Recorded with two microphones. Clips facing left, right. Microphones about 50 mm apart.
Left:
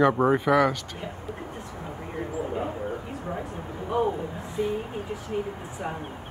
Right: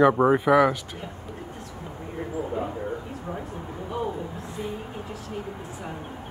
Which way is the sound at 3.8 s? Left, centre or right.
Left.